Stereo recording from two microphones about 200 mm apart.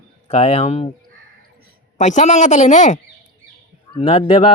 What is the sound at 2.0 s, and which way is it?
Speech, 35° left (ahead or behind).